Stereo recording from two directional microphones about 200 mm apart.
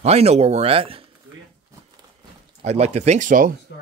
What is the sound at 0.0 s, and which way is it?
Speech, 30° right (ahead or behind).